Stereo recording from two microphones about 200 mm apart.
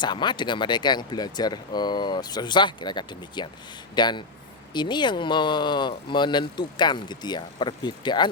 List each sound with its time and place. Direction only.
0.0 s speech: 20° left (ahead or behind)